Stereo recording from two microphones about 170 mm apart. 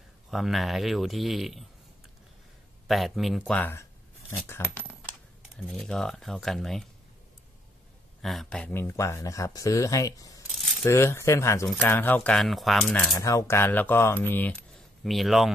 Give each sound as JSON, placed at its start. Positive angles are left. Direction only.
{"t": 0.3, "sound": "speech", "side_deg": 0}
{"t": 2.9, "sound": "speech", "side_deg": 0}
{"t": 5.6, "sound": "speech", "side_deg": 0}
{"t": 8.2, "sound": "speech", "side_deg": 0}
{"t": 10.5, "sound": "keys jangling", "side_deg": 0}
{"t": 10.8, "sound": "speech", "side_deg": 15}
{"t": 12.9, "sound": "speech", "side_deg": 20}
{"t": 15.0, "sound": "speech", "side_deg": 0}